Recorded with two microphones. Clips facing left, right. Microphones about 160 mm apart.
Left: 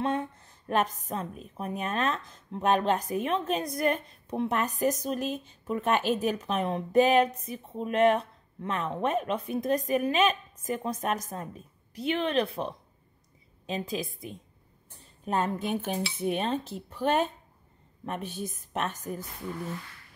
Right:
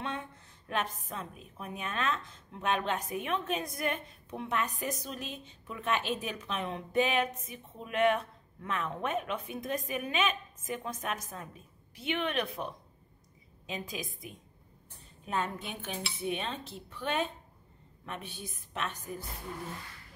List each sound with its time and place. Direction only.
0.0 s a woman's voice: 40° left (ahead or behind)
15.2 s dishes: 40° left (ahead or behind)